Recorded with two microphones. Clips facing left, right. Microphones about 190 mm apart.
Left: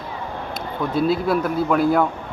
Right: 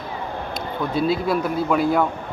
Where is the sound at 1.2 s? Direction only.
Centre (ahead or behind).